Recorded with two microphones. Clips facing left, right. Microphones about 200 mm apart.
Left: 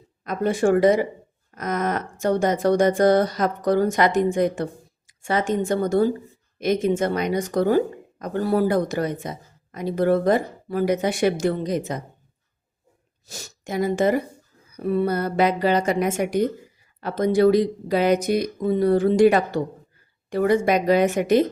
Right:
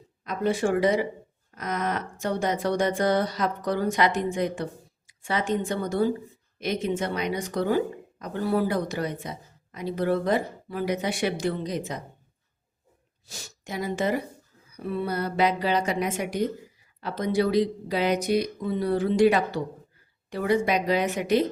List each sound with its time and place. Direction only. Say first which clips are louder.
0.3 s a woman's voice: left 5 dB; 50° left (ahead or behind)
13.2 s a woman's voice: left 5 dB; 45° left (ahead or behind)